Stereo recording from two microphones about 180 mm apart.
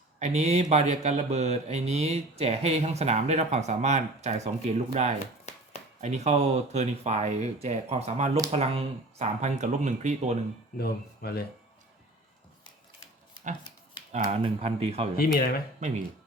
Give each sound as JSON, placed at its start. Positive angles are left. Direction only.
{"t": 0.2, "sound": "speech", "side_deg": -35}
{"t": 10.8, "sound": "speech", "side_deg": 60}
{"t": 14.1, "sound": "speech", "side_deg": -40}